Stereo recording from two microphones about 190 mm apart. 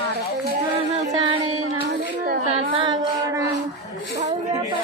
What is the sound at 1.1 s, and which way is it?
Music, 25° right (ahead or behind).